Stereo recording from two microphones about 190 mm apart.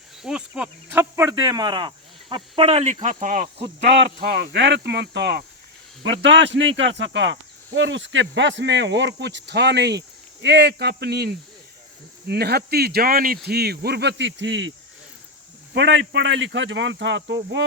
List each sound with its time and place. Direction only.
0.2 s speech: 5° right (ahead or behind)
1.1 s speech: 15° right (ahead or behind); by 3.5 s 45° right (ahead or behind)
3.8 s speech: 65° right (ahead or behind)
15.7 s speech: 70° right (ahead or behind)